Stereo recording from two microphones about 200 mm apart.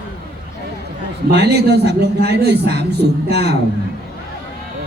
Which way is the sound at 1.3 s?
55° right (ahead or behind).